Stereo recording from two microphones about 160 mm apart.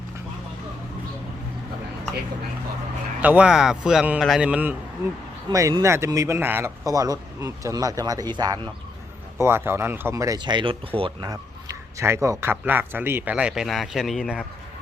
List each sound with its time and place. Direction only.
3.2 s a man's voice: 10° right (ahead or behind)
5.5 s a man's voice: 20° right (ahead or behind)
11.3 s a man's voice: 20° right (ahead or behind); by 14.4 s 5° right (ahead or behind)